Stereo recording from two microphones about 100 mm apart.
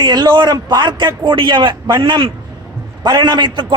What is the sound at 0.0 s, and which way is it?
A man's voice, 45° right (ahead or behind).